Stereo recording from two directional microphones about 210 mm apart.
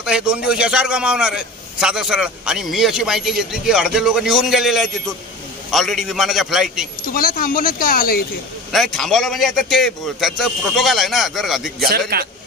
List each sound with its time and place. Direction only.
0.0 s a man's voice: 5° right (ahead or behind)
7.1 s speech: 40° left (ahead or behind)
8.7 s a man's voice: centre (ahead or behind)
12.1 s a man's voice: 45° right (ahead or behind)